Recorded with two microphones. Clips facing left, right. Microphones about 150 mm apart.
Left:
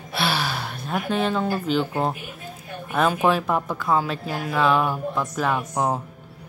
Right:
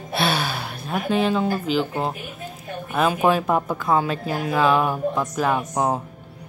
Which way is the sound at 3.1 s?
15° right (ahead or behind).